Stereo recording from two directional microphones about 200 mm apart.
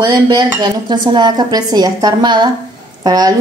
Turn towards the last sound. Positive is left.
turn(degrees=-20)  # may be behind; listen again after turning